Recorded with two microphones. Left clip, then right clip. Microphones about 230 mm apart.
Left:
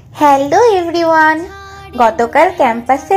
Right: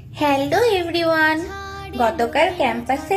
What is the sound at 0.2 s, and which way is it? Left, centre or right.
Speech, centre.